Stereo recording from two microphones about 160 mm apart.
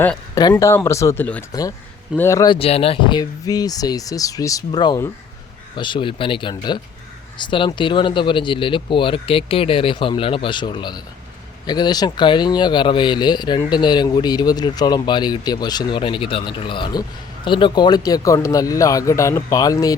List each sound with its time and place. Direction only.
0.4 s speech: 20° left (ahead or behind)
2.5 s speech: 40° left (ahead or behind); by 19.9 s 20° left (ahead or behind)